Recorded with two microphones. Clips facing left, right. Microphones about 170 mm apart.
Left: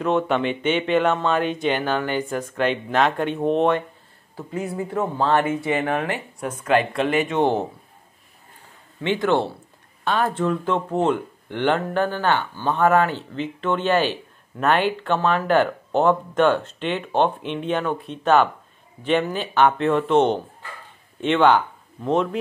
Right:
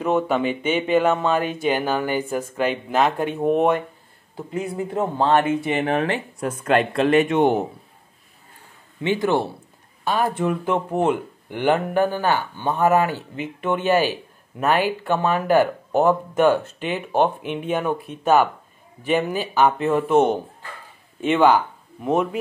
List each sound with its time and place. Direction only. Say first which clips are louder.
0.0 s speech: even; 5° right (ahead or behind); by 6.2 s 25° right (ahead or behind)
6.4 s speech: even; 15° left (ahead or behind)
7.2 s speech: right 2 dB; 15° right (ahead or behind)
9.0 s speech: even; 10° right (ahead or behind)